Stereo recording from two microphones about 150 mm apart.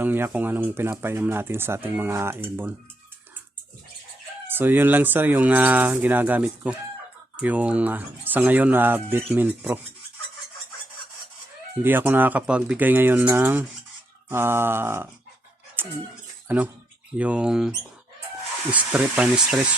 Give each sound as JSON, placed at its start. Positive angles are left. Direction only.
{"t": 0.0, "sound": "speech", "side_deg": -10}
{"t": 4.4, "sound": "speech", "side_deg": -15}
{"t": 11.8, "sound": "speech", "side_deg": -15}
{"t": 15.8, "sound": "a sound", "side_deg": -15}
{"t": 17.2, "sound": "speech", "side_deg": -10}